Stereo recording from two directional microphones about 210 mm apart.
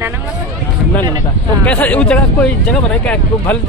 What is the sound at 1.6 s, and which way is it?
Speech, 5° left (ahead or behind).